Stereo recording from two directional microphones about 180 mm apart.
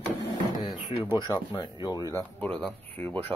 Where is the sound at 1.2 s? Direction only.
25° left (ahead or behind).